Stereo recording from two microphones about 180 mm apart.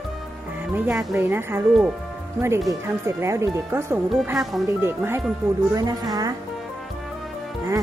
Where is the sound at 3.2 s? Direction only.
15° right (ahead or behind).